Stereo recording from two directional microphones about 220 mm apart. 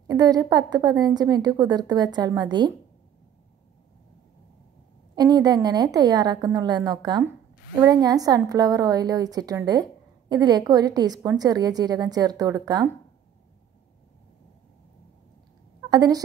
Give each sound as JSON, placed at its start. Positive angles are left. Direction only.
{"t": 0.0, "sound": "a woman's voice", "side_deg": -15}
{"t": 5.1, "sound": "a woman's voice", "side_deg": -15}
{"t": 15.9, "sound": "speech", "side_deg": -15}